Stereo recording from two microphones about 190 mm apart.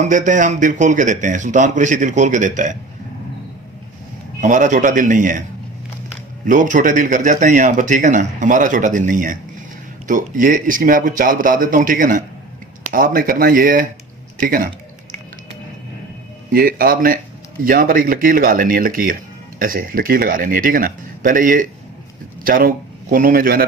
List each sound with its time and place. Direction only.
0.0 s a man's voice: 40° right (ahead or behind)
4.4 s speech: 40° right (ahead or behind)
6.4 s speech: 40° right (ahead or behind)
14.4 s a sound: 50° right (ahead or behind)
16.5 s speech: 50° right (ahead or behind)